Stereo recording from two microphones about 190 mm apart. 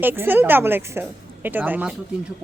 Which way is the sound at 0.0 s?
10° right (ahead or behind).